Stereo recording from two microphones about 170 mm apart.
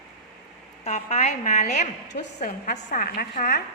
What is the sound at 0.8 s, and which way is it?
A woman's voice, 40° left (ahead or behind).